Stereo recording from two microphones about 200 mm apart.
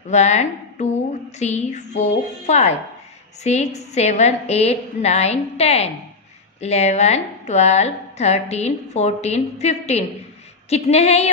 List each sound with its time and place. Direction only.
0.1 s music: 35° left (ahead or behind)
1.4 s a woman's voice: 35° left (ahead or behind)